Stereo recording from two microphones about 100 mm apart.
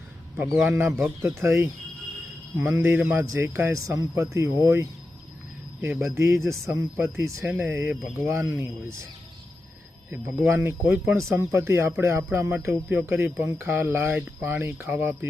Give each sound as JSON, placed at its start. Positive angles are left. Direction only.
{"t": 0.6, "sound": "speech", "side_deg": -25}
{"t": 10.1, "sound": "speech", "side_deg": -20}